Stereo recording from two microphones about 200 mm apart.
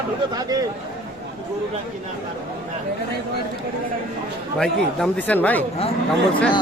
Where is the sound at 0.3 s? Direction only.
20° right (ahead or behind).